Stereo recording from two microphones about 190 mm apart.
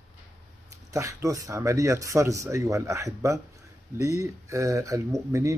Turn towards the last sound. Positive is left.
turn(degrees=-15)  # may be behind; listen again after turning